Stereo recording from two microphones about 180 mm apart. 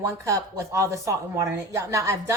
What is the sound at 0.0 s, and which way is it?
Speech, 15° right (ahead or behind).